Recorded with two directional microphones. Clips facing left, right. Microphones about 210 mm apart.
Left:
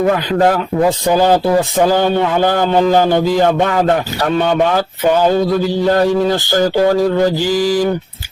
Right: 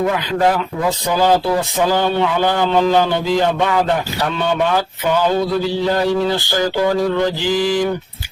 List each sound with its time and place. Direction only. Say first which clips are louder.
0.3 s a man's voice: left 3 dB; 45° left (ahead or behind)
1.8 s a man's voice: left 2 dB; 45° left (ahead or behind)
5.9 s a man's voice: left 4 dB; 45° left (ahead or behind)